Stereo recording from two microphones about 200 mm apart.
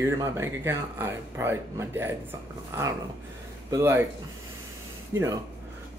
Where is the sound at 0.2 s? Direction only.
10° right (ahead or behind).